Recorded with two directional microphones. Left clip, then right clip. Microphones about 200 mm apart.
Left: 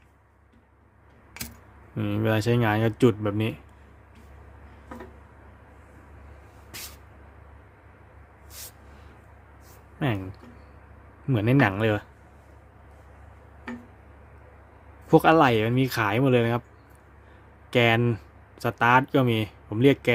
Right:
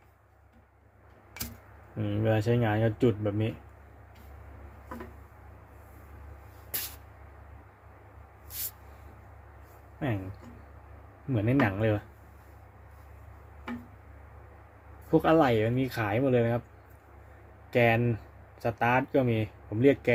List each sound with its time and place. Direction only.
2.0 s speech: 35° left (ahead or behind)
11.3 s speech: 35° left (ahead or behind)
15.1 s speech: 25° left (ahead or behind)
17.7 s speech: 30° left (ahead or behind)